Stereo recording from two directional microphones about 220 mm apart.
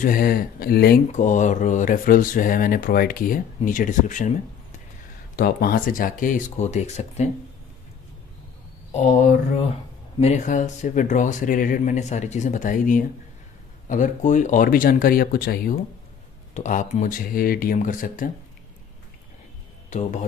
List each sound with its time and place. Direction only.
0.0 s speech: 40° left (ahead or behind)
5.3 s speech: 45° left (ahead or behind)
10.2 s speech: 35° left (ahead or behind)
19.9 s speech: 35° left (ahead or behind)